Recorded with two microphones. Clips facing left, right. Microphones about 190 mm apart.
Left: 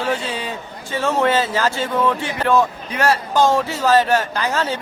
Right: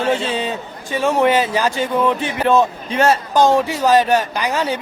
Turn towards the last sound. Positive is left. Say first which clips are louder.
# right 1 dB
turn(degrees=-15)  # may be behind; listen again after turning